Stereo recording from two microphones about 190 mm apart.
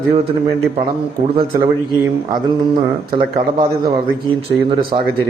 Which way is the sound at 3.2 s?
20° right (ahead or behind).